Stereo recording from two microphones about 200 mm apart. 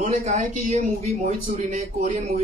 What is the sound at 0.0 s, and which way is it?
A man's voice, 40° right (ahead or behind).